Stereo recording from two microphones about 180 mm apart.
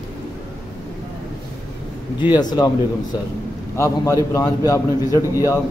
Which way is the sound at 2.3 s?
25° left (ahead or behind).